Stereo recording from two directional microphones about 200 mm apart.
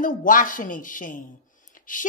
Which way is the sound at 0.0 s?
40° left (ahead or behind).